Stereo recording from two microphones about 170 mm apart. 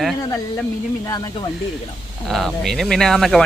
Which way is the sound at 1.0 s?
20° left (ahead or behind).